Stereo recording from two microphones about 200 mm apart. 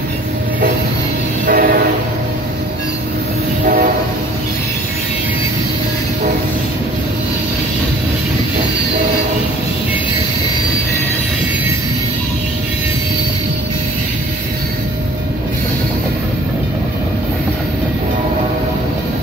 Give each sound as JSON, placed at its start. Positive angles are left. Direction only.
{"t": 1.4, "sound": "train", "side_deg": -45}